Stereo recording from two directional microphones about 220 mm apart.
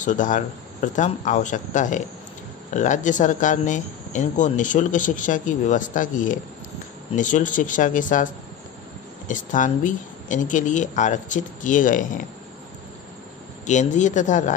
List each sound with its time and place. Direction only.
0.0 s speech: 35° left (ahead or behind)
9.3 s speech: 35° left (ahead or behind)
13.7 s speech: 35° left (ahead or behind)